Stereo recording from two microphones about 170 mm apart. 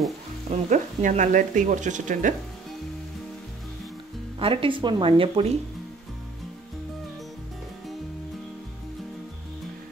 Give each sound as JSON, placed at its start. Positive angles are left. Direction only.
{"t": 0.5, "sound": "speech", "side_deg": -45}
{"t": 4.4, "sound": "speech", "side_deg": -30}